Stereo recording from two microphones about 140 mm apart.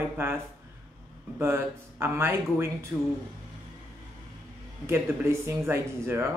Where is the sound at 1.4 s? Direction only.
20° right (ahead or behind).